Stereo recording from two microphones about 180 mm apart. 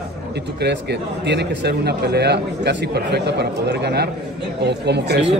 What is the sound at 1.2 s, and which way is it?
A man's voice, 70° right (ahead or behind).